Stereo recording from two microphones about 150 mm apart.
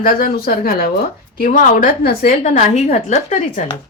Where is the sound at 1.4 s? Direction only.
65° left (ahead or behind).